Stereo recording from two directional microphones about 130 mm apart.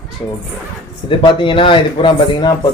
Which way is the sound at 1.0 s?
40° left (ahead or behind).